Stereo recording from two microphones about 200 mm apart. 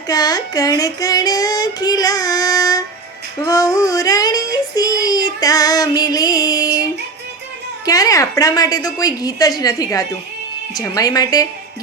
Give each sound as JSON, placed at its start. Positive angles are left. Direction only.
{"t": 0.1, "sound": "child singing", "side_deg": 20}
{"t": 7.9, "sound": "a woman's voice", "side_deg": 15}